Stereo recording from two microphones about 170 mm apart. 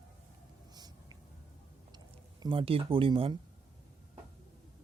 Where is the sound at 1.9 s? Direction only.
25° right (ahead or behind).